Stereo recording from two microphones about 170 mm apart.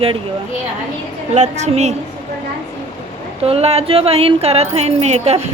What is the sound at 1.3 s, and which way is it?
Speech, 40° right (ahead or behind).